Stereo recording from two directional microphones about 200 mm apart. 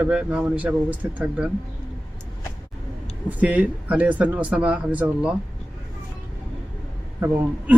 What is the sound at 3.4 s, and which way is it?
Speech, 5° right (ahead or behind).